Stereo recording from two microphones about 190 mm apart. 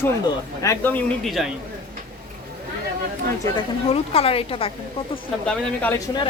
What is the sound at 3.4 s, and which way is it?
A woman's voice, 25° left (ahead or behind).